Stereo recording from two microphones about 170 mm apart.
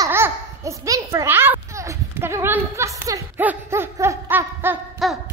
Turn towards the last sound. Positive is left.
turn(degrees=0)  # may be behind; listen again after turning